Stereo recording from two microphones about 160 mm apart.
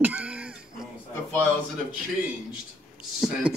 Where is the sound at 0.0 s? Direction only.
10° right (ahead or behind).